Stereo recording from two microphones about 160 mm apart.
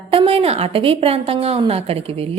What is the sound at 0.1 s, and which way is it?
A woman's voice, 35° right (ahead or behind).